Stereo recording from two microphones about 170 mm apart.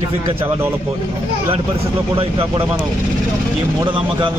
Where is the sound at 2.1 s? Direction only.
30° right (ahead or behind).